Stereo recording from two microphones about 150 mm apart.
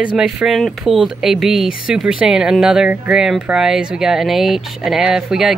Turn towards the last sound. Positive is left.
turn(degrees=0)  # may be behind; listen again after turning